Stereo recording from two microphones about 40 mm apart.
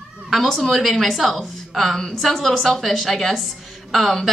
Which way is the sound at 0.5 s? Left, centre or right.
Centre.